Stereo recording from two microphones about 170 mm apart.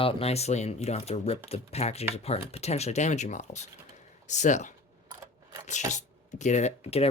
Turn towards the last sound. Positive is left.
turn(degrees=35)  # may be behind; listen again after turning